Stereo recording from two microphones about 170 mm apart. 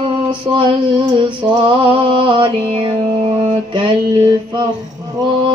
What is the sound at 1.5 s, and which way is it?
Music, 30° right (ahead or behind).